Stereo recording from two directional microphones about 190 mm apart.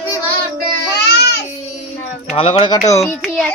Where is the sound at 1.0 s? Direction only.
65° left (ahead or behind).